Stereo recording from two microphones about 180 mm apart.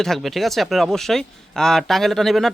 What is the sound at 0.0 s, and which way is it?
Speech, centre (ahead or behind).